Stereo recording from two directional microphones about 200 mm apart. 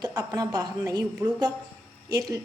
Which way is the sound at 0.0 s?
20° right (ahead or behind).